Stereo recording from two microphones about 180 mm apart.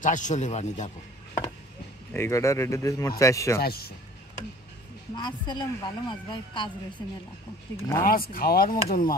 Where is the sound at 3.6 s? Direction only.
60° left (ahead or behind).